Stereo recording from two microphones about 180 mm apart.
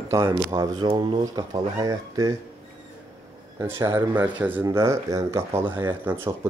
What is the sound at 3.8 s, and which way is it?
Speech, 15° right (ahead or behind).